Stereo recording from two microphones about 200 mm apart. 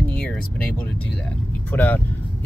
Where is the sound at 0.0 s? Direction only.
5° left (ahead or behind).